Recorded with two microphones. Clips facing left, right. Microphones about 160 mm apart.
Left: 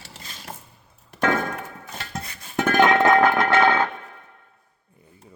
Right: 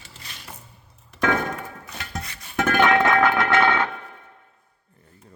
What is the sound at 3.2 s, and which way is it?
Music, 40° left (ahead or behind).